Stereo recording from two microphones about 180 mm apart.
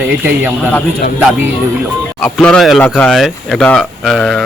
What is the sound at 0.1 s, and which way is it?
Speech, 5° right (ahead or behind).